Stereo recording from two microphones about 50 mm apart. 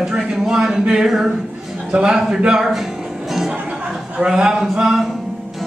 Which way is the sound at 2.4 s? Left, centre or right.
Centre.